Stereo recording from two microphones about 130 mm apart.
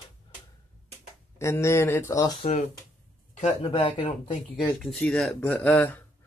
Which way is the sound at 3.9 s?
55° left (ahead or behind).